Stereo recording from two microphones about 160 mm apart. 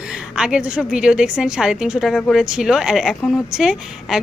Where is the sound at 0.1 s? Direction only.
5° right (ahead or behind).